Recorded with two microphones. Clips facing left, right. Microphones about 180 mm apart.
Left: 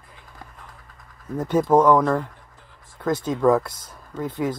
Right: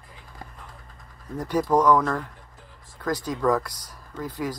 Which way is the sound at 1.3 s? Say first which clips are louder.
Left 4 dB; 25° left (ahead or behind).